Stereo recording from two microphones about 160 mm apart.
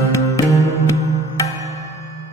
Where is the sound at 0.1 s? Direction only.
20° left (ahead or behind).